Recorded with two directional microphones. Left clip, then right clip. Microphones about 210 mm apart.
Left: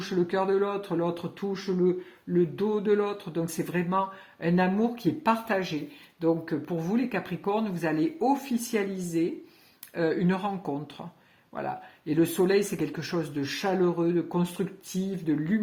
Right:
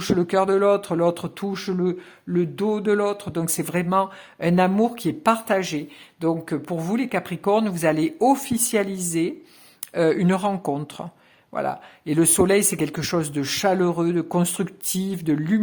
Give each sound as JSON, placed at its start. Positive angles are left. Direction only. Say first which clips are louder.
{"t": 0.0, "sound": "speech", "louder": "right 7 dB", "side_deg": -35}